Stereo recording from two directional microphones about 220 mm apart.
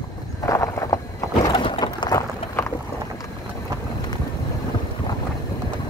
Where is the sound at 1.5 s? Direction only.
20° left (ahead or behind).